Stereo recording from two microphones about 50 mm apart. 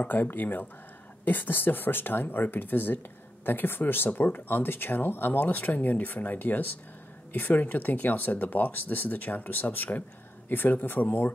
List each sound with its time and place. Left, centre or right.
0.0 s speech: left